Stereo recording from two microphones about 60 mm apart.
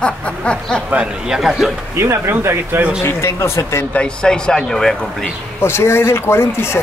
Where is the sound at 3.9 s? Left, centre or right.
Centre.